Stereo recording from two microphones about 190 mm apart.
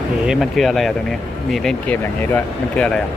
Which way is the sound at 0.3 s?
Centre (ahead or behind).